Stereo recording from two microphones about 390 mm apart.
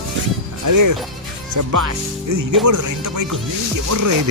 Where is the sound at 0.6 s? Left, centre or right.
Right.